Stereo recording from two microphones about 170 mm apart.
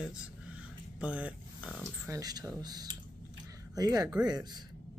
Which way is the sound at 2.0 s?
20° right (ahead or behind).